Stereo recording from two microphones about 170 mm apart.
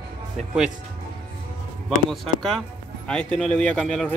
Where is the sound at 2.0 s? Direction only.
Centre (ahead or behind).